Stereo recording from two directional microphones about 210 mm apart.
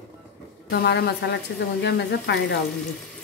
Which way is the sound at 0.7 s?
50° left (ahead or behind).